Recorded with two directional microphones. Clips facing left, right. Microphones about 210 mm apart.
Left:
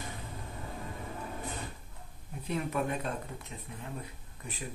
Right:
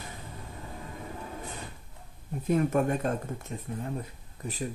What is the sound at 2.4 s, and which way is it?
Speech, 45° right (ahead or behind).